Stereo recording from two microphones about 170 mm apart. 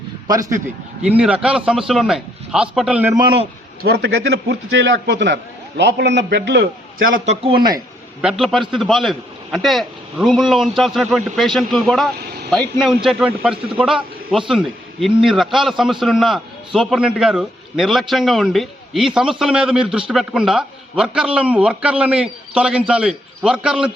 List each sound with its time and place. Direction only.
0.3 s speech: 20° right (ahead or behind)
1.1 s a man's voice: 5° right (ahead or behind)
3.2 s speech: 30° right (ahead or behind)
3.8 s a man's voice: 80° right
7.0 s a man's voice: 55° right (ahead or behind)
7.4 s speech: 25° right (ahead or behind)
8.2 s a man's voice: centre (ahead or behind)